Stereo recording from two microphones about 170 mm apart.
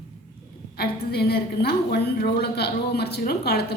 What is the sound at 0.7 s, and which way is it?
A woman's voice, 70° left (ahead or behind).